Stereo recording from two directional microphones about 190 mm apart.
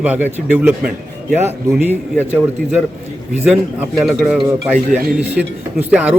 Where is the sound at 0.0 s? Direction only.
5° right (ahead or behind).